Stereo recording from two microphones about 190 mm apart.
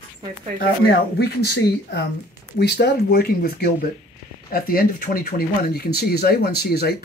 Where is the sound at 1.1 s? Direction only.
60° left (ahead or behind).